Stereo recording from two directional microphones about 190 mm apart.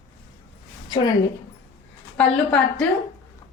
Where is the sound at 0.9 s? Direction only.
20° left (ahead or behind).